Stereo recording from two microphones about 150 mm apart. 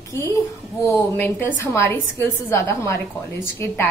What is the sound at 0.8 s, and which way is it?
A woman's voice, 15° left (ahead or behind).